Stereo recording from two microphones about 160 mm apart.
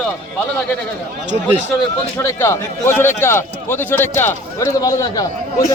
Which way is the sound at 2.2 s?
15° left (ahead or behind).